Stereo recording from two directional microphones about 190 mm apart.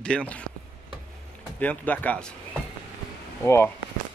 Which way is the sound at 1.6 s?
5° left (ahead or behind).